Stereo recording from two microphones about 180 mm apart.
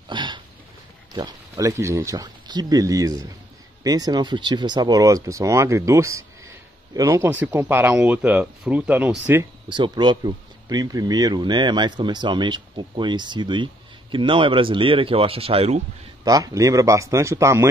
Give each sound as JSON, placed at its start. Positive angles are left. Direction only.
{"t": 0.1, "sound": "a sound", "side_deg": -25}
{"t": 1.1, "sound": "speech", "side_deg": -20}
{"t": 9.7, "sound": "speech", "side_deg": -25}
{"t": 16.3, "sound": "speech", "side_deg": -20}